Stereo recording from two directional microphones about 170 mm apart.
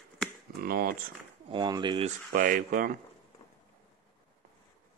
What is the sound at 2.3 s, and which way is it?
Speech, 55° right (ahead or behind).